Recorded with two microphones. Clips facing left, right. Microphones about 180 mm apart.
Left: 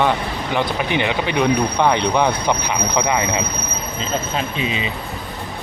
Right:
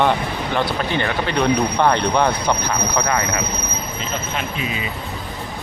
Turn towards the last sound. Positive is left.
turn(degrees=25)  # may be behind; listen again after turning